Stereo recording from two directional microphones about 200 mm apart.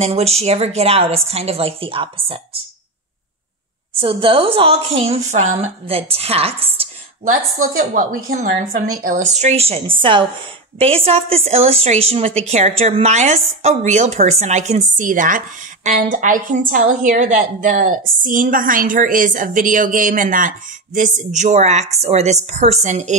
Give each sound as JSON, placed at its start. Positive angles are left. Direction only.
{"t": 0.0, "sound": "a woman's voice", "side_deg": -30}
{"t": 4.0, "sound": "a woman's voice", "side_deg": -25}
{"t": 7.8, "sound": "a woman's voice", "side_deg": -40}
{"t": 9.4, "sound": "a woman's voice", "side_deg": -30}